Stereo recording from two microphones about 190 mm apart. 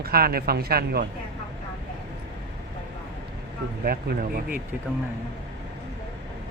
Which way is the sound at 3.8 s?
50° right (ahead or behind).